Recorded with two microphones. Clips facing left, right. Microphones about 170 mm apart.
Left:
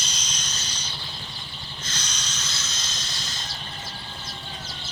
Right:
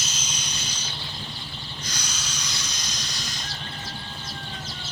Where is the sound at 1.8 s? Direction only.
10° right (ahead or behind).